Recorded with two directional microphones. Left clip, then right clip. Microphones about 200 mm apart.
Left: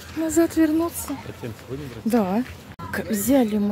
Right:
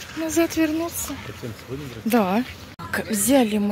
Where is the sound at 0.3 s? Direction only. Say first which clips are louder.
Left 2 dB; 25° left (ahead or behind).